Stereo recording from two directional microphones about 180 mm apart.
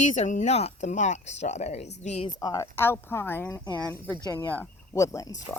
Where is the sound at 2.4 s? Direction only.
20° left (ahead or behind).